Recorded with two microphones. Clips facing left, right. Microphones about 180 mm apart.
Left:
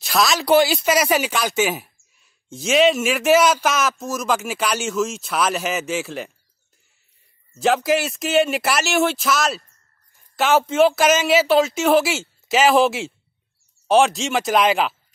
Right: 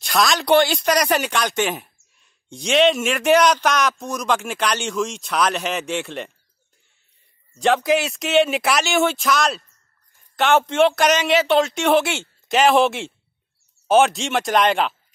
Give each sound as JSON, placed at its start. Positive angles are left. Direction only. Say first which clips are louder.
{"t": 0.0, "sound": "speech", "louder": "even", "side_deg": 0}
{"t": 7.5, "sound": "speech", "louder": "even", "side_deg": 5}